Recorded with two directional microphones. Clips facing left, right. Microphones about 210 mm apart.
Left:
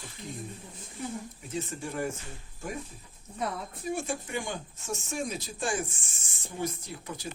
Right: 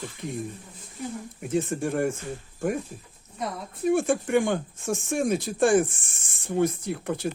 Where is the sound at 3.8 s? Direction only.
55° right (ahead or behind).